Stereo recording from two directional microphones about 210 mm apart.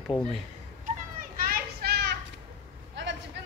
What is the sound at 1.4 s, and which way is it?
Children playing, 45° right (ahead or behind).